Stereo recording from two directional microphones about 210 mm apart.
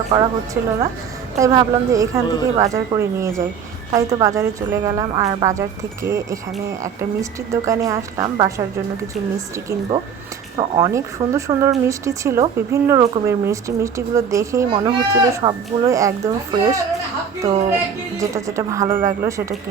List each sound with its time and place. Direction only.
0.1 s speech: 15° right (ahead or behind)
2.2 s a woman's voice: 20° left (ahead or behind)
2.6 s speech: 15° right (ahead or behind)
10.6 s speech: 20° right (ahead or behind)
18.2 s speech: 15° right (ahead or behind)